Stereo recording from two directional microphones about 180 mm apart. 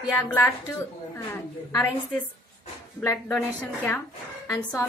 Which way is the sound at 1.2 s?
10° left (ahead or behind).